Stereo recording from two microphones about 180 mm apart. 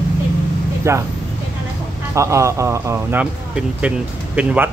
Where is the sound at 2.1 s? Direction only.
15° right (ahead or behind).